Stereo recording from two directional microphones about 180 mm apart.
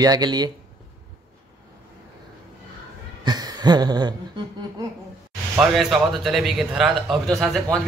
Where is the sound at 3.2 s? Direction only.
20° right (ahead or behind).